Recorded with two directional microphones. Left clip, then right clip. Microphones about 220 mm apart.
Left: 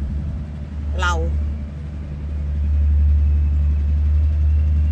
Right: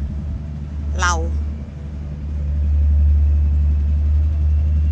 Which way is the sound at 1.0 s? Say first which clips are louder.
Right 2 dB; centre (ahead or behind).